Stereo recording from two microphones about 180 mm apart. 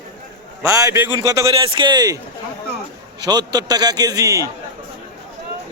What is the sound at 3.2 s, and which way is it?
A man's voice, 20° right (ahead or behind).